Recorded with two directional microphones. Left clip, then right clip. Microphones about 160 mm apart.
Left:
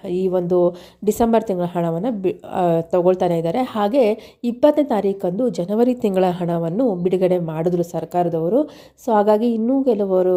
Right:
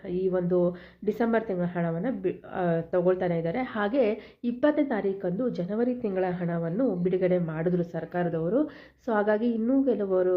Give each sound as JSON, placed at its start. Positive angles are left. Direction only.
{"t": 0.0, "sound": "a woman's voice", "side_deg": 45}